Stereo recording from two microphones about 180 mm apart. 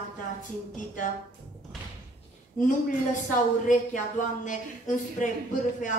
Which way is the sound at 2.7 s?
45° left (ahead or behind).